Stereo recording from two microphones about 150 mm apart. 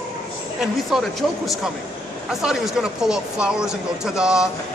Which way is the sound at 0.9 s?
Centre (ahead or behind).